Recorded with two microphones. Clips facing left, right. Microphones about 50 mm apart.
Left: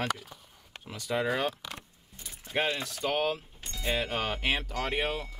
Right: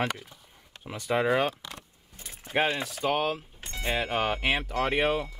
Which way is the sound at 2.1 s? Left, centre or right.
Right.